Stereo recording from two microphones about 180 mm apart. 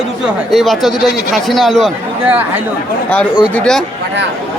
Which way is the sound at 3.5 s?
5° left (ahead or behind).